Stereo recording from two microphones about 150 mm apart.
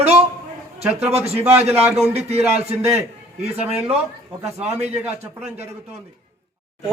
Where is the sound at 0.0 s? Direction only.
45° right (ahead or behind).